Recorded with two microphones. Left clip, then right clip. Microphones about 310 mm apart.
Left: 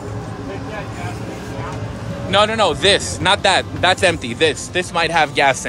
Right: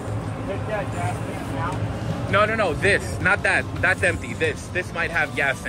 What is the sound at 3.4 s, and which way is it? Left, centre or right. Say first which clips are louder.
Speech: left 6 dB; left.